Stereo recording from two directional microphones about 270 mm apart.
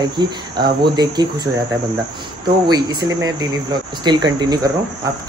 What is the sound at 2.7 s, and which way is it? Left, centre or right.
Speech, centre.